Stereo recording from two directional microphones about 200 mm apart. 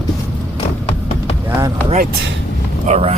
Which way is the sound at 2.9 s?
30° right (ahead or behind).